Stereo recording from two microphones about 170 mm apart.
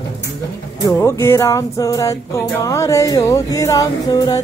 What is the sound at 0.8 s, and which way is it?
Music, 15° left (ahead or behind).